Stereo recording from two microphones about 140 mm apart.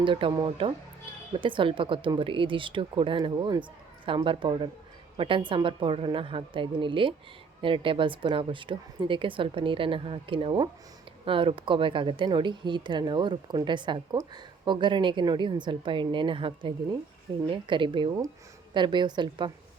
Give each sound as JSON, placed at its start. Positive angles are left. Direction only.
{"t": 0.0, "sound": "a woman's voice", "side_deg": -35}